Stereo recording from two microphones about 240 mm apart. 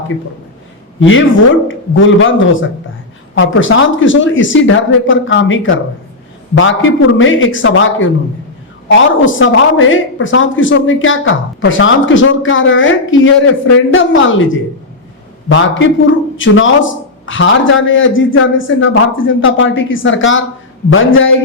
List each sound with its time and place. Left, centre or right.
0.9 s a man's voice: left